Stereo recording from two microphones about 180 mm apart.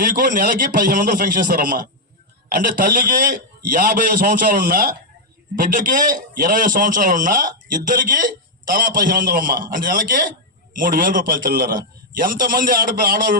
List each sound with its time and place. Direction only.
0.0 s a man's voice: 50° right (ahead or behind)